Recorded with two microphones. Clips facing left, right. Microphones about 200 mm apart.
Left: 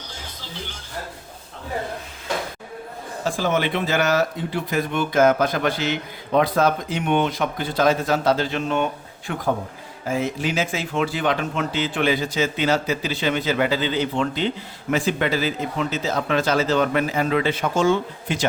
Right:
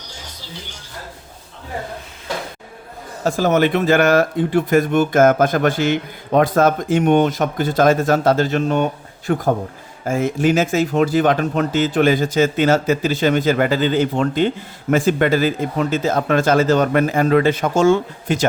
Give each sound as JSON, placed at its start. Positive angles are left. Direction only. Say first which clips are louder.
{"t": 3.2, "sound": "speech", "louder": "right 7 dB", "side_deg": -45}